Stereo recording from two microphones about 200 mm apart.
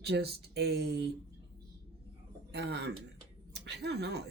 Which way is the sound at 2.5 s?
55° right (ahead or behind).